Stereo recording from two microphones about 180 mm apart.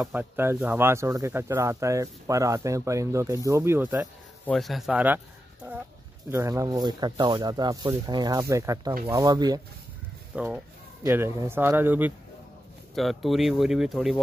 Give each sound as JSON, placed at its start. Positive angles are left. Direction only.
{"t": 0.0, "sound": "speech", "side_deg": -10}
{"t": 6.3, "sound": "speech", "side_deg": -15}
{"t": 10.3, "sound": "speech", "side_deg": -5}
{"t": 12.9, "sound": "speech", "side_deg": 0}